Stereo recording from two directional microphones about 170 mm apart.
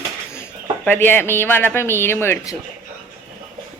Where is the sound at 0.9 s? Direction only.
10° left (ahead or behind).